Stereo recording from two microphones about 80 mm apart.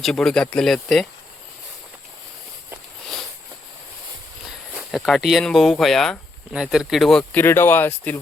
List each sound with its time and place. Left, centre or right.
0.0 s speech: centre
4.4 s a sound: centre
4.9 s speech: centre
6.5 s speech: centre
7.3 s speech: left